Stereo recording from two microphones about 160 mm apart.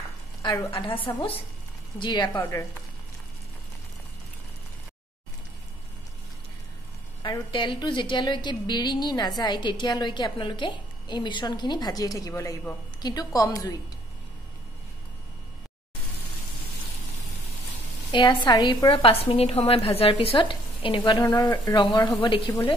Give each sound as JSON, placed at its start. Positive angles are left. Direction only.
{"t": 0.4, "sound": "a woman's voice", "side_deg": 25}
{"t": 2.0, "sound": "a woman's voice", "side_deg": 25}
{"t": 2.3, "sound": "a woman's voice", "side_deg": 15}
{"t": 7.2, "sound": "a woman's voice", "side_deg": 30}
{"t": 18.1, "sound": "a woman's voice", "side_deg": 30}
{"t": 21.2, "sound": "a woman's voice", "side_deg": 15}
{"t": 22.2, "sound": "a woman's voice", "side_deg": 35}